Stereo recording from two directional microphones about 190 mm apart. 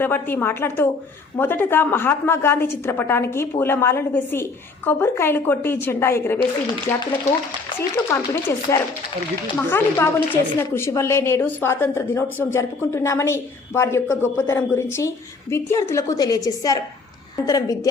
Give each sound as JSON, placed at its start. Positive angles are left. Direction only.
{"t": 0.0, "sound": "a woman's voice", "side_deg": 10}
{"t": 8.1, "sound": "a woman's voice", "side_deg": 15}